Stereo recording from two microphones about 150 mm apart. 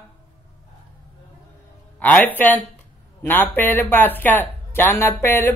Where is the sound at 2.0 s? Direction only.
10° left (ahead or behind).